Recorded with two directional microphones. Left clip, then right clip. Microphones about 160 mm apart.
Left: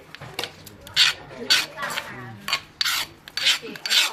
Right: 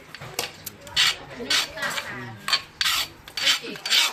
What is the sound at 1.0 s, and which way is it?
Filing, 5° left (ahead or behind).